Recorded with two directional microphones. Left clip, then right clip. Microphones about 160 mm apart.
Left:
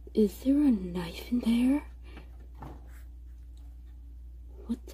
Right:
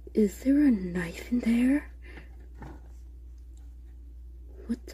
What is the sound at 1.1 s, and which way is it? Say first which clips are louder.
Speech: right 1 dB; 40° right (ahead or behind).